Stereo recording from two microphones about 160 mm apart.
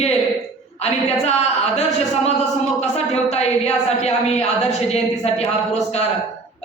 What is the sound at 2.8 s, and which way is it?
A woman's voice, 45° left (ahead or behind).